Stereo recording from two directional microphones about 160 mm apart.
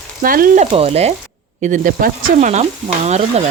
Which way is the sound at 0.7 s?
40° right (ahead or behind).